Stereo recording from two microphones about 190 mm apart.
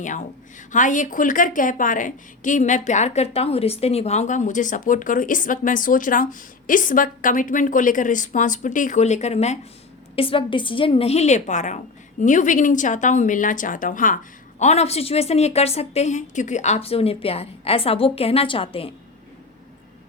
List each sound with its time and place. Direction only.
0.0 s a woman's voice: 40° left (ahead or behind)